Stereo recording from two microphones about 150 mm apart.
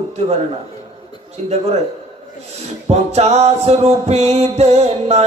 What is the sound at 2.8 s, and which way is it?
Music, 45° right (ahead or behind).